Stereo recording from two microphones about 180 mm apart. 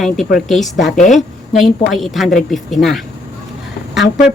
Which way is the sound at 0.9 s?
45° left (ahead or behind).